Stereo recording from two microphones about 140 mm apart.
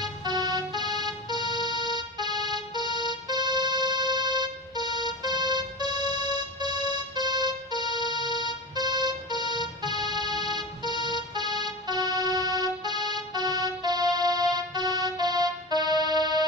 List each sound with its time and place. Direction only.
0.0 s music: 30° right (ahead or behind)